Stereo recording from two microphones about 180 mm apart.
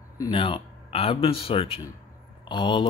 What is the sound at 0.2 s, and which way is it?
Speech, 30° left (ahead or behind).